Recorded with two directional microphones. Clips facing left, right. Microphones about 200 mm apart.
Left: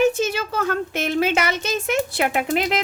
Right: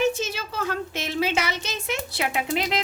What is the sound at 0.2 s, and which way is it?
Speech, 55° left (ahead or behind).